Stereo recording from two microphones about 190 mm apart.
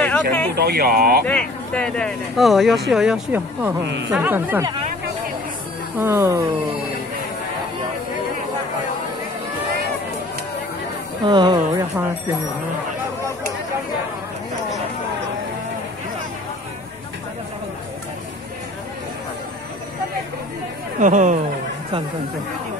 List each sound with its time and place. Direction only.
0.0 s a sound: 10° left (ahead or behind)
0.6 s speech: 55° right (ahead or behind)
1.2 s speech: 5° left (ahead or behind)
3.8 s speech: 70° right (ahead or behind)
4.1 s speech: 10° right (ahead or behind)
5.9 s speech: 15° right (ahead or behind)
11.2 s speech: 25° right (ahead or behind)
21.0 s speech: 40° right (ahead or behind)